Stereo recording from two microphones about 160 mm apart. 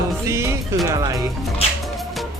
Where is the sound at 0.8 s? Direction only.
20° right (ahead or behind).